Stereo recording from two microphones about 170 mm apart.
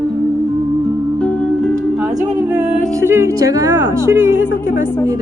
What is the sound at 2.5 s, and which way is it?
Speech, 10° right (ahead or behind).